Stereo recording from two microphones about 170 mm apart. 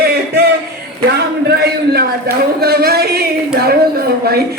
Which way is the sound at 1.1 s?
75° right (ahead or behind).